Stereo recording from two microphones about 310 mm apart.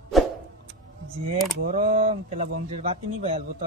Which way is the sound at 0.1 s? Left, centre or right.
Centre.